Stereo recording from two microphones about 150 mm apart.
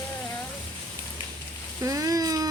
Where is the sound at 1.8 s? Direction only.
25° right (ahead or behind).